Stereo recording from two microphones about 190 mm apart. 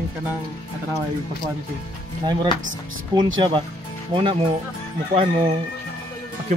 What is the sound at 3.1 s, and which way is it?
Speech, 25° right (ahead or behind).